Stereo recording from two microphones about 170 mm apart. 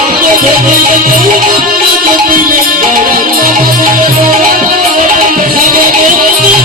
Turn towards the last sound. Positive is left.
turn(degrees=-55)  # may be behind; listen again after turning